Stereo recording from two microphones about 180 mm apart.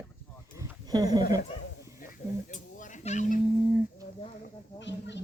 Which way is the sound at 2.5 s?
45° left (ahead or behind).